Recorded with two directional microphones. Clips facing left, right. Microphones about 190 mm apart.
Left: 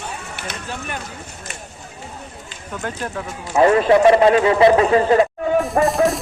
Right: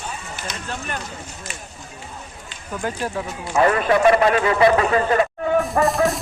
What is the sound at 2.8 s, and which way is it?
Speech, 10° right (ahead or behind).